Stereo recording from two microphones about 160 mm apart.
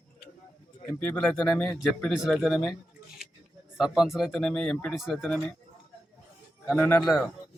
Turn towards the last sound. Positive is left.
turn(degrees=0)  # may be behind; listen again after turning